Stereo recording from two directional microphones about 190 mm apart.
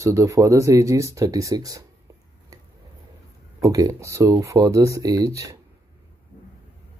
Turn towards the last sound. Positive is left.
turn(degrees=-15)  # may be behind; listen again after turning